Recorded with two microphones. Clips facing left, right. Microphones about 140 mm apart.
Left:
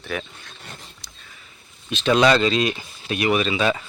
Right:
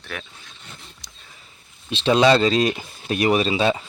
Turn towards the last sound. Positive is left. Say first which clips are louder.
# right 1 dB
turn(degrees=-30)  # may be behind; listen again after turning